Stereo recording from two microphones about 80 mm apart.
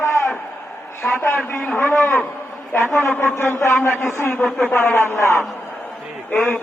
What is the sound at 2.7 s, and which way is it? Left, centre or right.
A man's voice, left.